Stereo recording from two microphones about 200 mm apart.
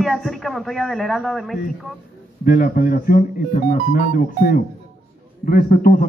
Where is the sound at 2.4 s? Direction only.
45° left (ahead or behind).